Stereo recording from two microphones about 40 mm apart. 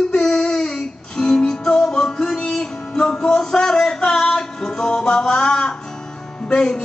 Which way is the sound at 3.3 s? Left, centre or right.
Centre.